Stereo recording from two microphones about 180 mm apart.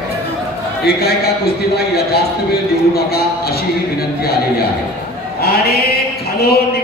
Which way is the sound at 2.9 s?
60° left (ahead or behind).